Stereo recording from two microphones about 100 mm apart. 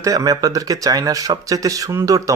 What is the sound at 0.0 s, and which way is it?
Speech, 35° right (ahead or behind).